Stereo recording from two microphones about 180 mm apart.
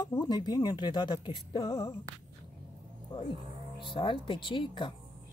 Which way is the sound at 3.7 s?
25° left (ahead or behind).